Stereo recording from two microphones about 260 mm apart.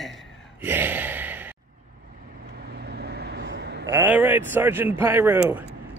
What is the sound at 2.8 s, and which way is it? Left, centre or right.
Vehicle, right.